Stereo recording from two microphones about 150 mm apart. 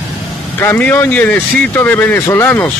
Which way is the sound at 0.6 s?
15° left (ahead or behind).